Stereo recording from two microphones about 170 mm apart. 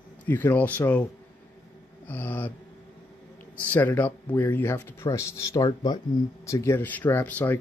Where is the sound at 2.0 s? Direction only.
10° left (ahead or behind).